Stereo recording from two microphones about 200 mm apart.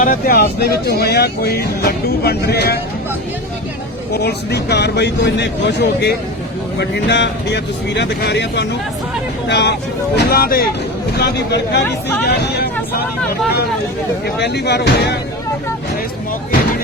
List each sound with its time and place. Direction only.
0.0 s speech: 45° left (ahead or behind)
4.1 s speech: 55° left (ahead or behind)
14.3 s speech: 55° left (ahead or behind)